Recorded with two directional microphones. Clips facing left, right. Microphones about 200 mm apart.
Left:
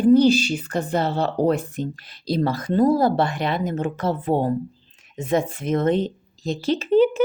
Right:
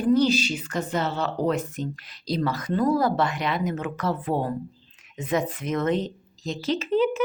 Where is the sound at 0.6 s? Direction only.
35° left (ahead or behind).